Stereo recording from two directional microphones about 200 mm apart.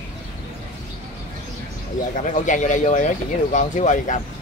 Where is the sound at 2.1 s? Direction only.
40° left (ahead or behind).